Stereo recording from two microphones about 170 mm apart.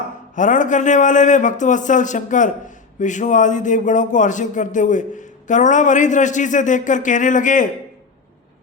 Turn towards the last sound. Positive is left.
turn(degrees=50)  # may be behind; listen again after turning